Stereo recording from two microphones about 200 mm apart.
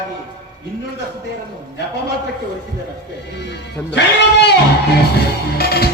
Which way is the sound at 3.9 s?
55° left (ahead or behind).